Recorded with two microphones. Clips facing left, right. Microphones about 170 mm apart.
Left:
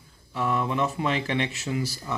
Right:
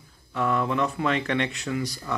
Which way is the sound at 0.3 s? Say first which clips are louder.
Right 2 dB; 5° left (ahead or behind).